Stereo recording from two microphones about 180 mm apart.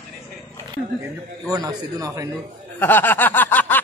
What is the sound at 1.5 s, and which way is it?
Speech, 20° right (ahead or behind).